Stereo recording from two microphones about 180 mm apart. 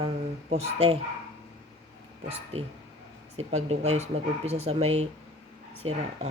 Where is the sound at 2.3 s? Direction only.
35° right (ahead or behind).